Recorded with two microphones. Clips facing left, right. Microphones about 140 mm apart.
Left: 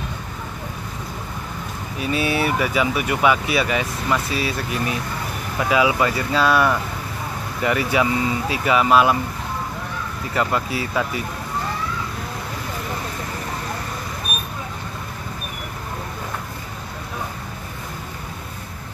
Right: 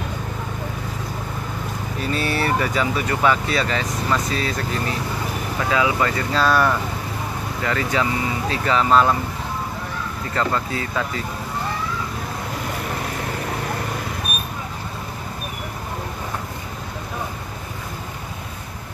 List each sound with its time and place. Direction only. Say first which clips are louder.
2.0 s speech: left 2 dB; 5° left (ahead or behind)
6.3 s speech: even; centre (ahead or behind)
7.6 s speech: left 3 dB; 15° left (ahead or behind)
10.3 s speech: left 1 dB; 10° left (ahead or behind)